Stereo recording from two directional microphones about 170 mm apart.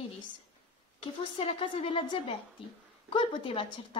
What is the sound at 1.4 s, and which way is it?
Speech, 30° left (ahead or behind).